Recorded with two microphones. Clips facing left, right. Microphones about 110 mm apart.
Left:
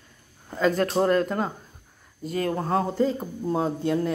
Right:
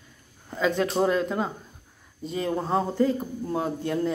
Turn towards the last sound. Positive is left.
turn(degrees=20)  # may be behind; listen again after turning